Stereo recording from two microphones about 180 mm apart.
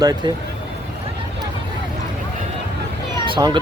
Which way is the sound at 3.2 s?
25° right (ahead or behind).